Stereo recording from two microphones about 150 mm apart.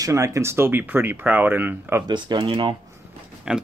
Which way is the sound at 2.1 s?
30° right (ahead or behind).